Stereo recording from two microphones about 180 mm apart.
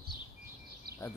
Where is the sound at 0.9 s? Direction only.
60° right (ahead or behind).